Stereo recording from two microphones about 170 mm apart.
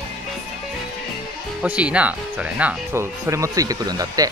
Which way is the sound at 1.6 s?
5° right (ahead or behind).